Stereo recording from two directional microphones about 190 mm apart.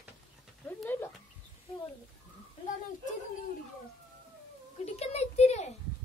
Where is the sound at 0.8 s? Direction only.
10° left (ahead or behind).